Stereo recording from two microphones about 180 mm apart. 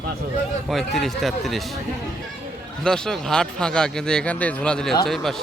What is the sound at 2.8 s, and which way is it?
Speech, 5° left (ahead or behind).